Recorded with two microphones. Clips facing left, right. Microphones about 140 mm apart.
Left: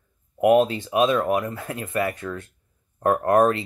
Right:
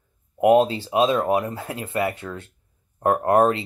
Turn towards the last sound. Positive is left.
turn(degrees=-25)  # may be behind; listen again after turning